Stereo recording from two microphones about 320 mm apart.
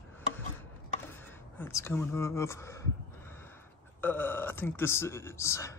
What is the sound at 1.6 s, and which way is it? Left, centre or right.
Speech, centre.